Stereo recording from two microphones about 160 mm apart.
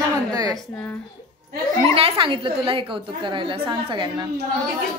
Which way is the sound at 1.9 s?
35° right (ahead or behind).